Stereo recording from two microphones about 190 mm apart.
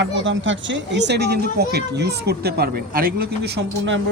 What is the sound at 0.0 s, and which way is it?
Speech, 80° right.